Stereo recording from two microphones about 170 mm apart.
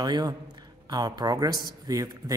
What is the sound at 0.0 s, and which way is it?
Speech, 25° right (ahead or behind).